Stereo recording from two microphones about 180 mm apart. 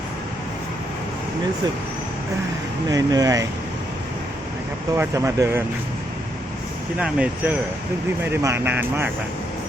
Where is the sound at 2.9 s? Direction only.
20° right (ahead or behind).